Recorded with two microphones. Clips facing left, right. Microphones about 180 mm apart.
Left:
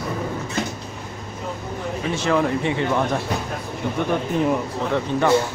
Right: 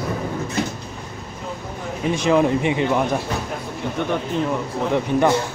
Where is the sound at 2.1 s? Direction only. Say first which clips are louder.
Right 4 dB; 15° right (ahead or behind).